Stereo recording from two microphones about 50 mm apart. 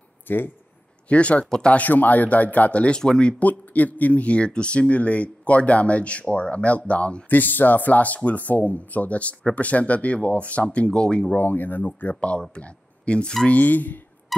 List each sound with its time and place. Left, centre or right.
0.3 s speech: left
1.0 s speech: left
1.4 s speech: centre
1.7 s speech: left; by 3.3 s centre
3.3 s speech: left
7.2 s speech: left
11.3 s speech: left
12.2 s speech: left